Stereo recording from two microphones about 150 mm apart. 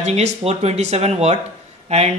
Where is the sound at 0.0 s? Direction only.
45° right (ahead or behind).